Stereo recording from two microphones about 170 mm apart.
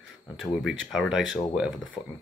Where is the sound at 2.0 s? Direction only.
30° left (ahead or behind).